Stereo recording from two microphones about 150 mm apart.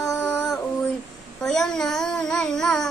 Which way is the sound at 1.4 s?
5° left (ahead or behind).